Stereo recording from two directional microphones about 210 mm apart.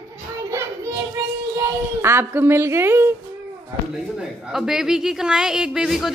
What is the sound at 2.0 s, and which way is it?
A woman's voice, 10° right (ahead or behind).